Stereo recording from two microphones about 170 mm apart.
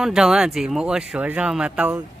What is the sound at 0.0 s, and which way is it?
Speech, 5° right (ahead or behind).